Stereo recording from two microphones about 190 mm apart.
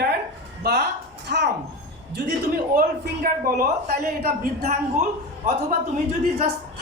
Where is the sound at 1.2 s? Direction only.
65° right (ahead or behind).